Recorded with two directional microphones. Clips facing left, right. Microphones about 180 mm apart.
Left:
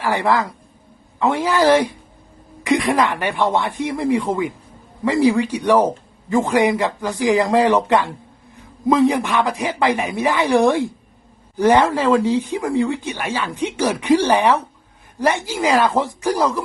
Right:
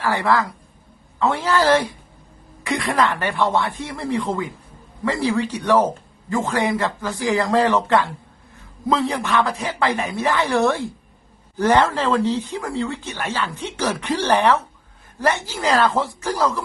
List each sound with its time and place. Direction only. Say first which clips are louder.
0.0 s speech: left 1 dB; 15° left (ahead or behind)